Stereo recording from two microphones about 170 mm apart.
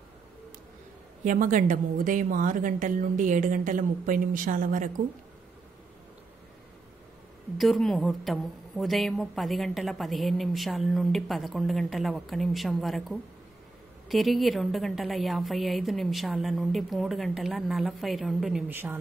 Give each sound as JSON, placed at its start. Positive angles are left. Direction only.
{"t": 1.2, "sound": "a woman's voice", "side_deg": -50}
{"t": 7.5, "sound": "a woman's voice", "side_deg": 0}